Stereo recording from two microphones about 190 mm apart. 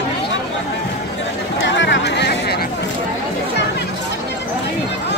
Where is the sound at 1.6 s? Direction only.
70° left (ahead or behind).